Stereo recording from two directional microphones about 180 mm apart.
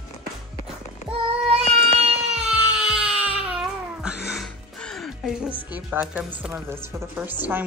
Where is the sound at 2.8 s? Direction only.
5° right (ahead or behind).